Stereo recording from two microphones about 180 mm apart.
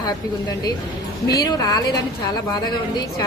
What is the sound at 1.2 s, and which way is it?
A woman's voice, 20° left (ahead or behind).